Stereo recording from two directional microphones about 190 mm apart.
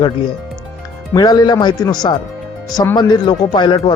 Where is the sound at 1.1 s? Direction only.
20° left (ahead or behind).